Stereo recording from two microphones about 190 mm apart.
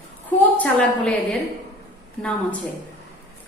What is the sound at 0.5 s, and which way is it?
Speech, 10° left (ahead or behind).